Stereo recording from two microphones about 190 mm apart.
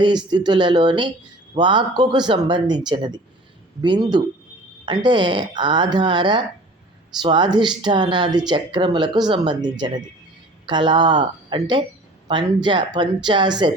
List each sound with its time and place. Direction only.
0.3 s speech: 20° right (ahead or behind)